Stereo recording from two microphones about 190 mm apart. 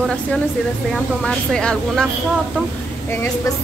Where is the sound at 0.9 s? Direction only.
5° left (ahead or behind).